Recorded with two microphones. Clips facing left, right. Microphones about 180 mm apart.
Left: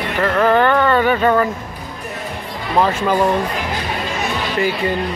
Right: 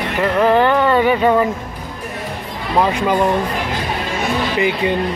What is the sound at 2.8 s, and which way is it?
Speech, 15° right (ahead or behind).